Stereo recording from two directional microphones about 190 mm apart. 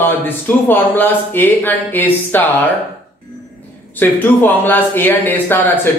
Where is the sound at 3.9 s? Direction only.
10° left (ahead or behind).